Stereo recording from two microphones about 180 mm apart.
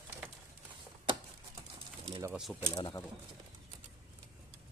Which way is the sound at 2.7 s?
25° left (ahead or behind).